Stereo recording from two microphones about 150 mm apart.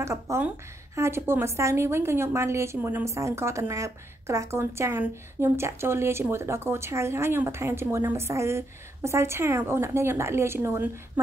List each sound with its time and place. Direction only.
0.0 s a woman's voice: 20° right (ahead or behind)